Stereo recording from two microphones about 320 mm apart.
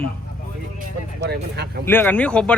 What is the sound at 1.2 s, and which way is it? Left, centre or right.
Speech, right.